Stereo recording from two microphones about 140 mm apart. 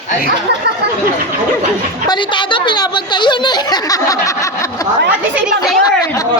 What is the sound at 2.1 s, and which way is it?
Speech, 35° left (ahead or behind).